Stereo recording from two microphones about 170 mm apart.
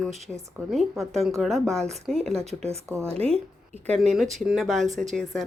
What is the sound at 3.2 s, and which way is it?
Speech, 35° right (ahead or behind).